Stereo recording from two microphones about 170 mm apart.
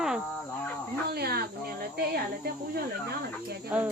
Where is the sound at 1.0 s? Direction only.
65° right (ahead or behind).